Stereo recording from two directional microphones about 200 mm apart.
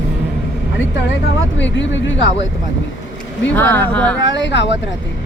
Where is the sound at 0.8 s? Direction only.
70° left (ahead or behind).